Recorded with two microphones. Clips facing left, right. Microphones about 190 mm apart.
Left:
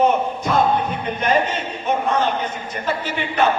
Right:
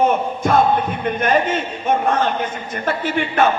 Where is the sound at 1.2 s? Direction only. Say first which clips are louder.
Right 1 dB; 50° right (ahead or behind).